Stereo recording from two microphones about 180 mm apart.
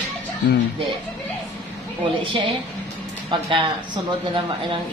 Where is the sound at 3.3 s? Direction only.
25° right (ahead or behind).